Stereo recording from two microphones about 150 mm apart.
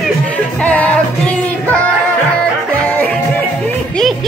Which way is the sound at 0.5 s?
10° left (ahead or behind).